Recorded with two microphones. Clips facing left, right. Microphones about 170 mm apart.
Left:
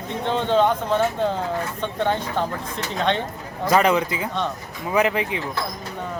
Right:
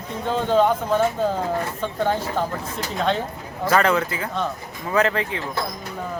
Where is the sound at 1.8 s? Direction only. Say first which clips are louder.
Even; 5° right (ahead or behind).